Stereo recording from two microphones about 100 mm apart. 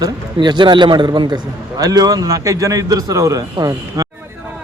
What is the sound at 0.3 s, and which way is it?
A man's voice, 50° right (ahead or behind).